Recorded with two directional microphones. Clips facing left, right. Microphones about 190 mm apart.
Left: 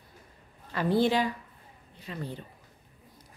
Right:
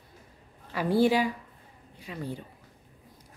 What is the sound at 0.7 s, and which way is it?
A woman's voice, 10° right (ahead or behind).